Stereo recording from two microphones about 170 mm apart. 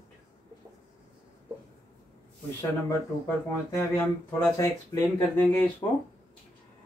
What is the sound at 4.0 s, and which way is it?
Speech, 15° left (ahead or behind).